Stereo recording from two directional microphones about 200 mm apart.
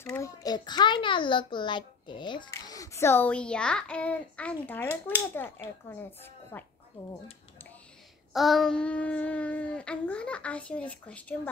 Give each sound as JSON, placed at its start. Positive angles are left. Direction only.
{"t": 0.0, "sound": "a child's voice", "side_deg": 15}
{"t": 7.0, "sound": "speech", "side_deg": 25}
{"t": 8.3, "sound": "child singing", "side_deg": 0}